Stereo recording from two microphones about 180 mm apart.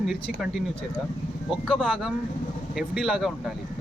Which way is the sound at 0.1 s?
5° right (ahead or behind).